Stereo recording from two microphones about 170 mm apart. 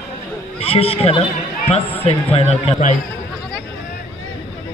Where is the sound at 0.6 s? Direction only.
35° left (ahead or behind).